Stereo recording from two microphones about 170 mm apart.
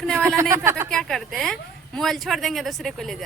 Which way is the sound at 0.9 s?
Centre (ahead or behind).